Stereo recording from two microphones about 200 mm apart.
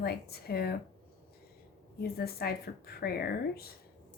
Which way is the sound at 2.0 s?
50° left (ahead or behind).